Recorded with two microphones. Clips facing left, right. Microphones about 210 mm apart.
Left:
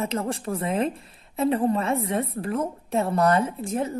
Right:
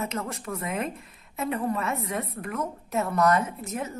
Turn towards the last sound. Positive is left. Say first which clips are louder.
# left 6 dB
turn(degrees=30)  # may be behind; listen again after turning